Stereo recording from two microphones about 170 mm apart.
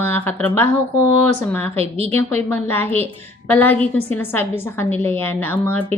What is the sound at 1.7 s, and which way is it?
Speech, 35° right (ahead or behind).